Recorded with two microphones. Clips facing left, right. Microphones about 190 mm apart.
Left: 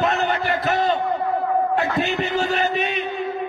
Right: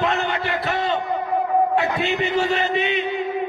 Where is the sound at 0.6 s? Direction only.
45° left (ahead or behind).